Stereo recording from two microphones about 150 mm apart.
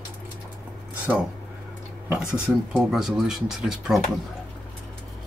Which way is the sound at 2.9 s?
Centre (ahead or behind).